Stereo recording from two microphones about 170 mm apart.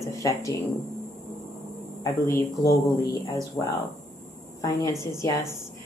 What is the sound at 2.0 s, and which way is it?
Speech, 20° left (ahead or behind).